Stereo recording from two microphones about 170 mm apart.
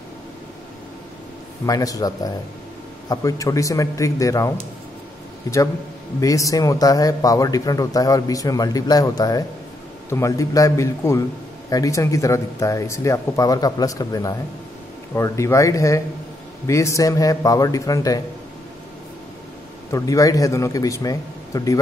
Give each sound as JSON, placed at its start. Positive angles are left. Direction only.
{"t": 1.7, "sound": "a man's voice", "side_deg": 20}
{"t": 6.2, "sound": "a man's voice", "side_deg": 20}
{"t": 19.9, "sound": "a man's voice", "side_deg": 20}